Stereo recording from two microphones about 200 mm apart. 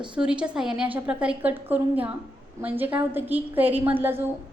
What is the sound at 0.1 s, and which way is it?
A woman's voice, 5° right (ahead or behind).